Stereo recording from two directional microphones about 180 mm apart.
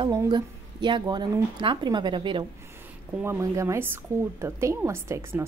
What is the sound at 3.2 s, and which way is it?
A woman's voice, 15° right (ahead or behind).